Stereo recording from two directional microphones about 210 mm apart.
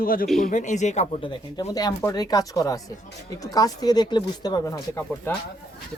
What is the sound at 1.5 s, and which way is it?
Speech, 20° left (ahead or behind).